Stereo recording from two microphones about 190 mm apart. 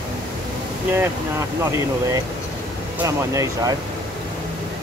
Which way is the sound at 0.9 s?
15° right (ahead or behind).